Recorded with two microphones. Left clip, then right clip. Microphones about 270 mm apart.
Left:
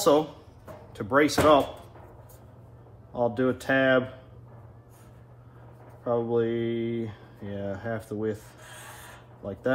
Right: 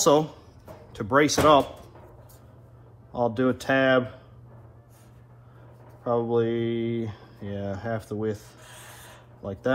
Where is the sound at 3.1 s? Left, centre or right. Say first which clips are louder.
Right 1 dB; centre.